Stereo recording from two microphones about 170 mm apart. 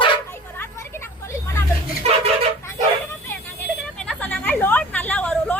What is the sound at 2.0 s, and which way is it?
Vehicle horn, 40° right (ahead or behind).